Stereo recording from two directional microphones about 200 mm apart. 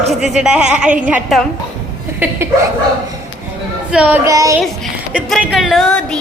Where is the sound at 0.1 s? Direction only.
Centre (ahead or behind).